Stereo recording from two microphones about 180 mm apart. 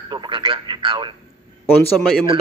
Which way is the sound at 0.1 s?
25° right (ahead or behind).